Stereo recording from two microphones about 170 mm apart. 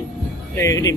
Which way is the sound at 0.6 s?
20° left (ahead or behind).